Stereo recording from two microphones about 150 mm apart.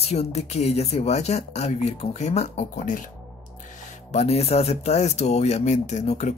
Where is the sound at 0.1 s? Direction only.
45° left (ahead or behind).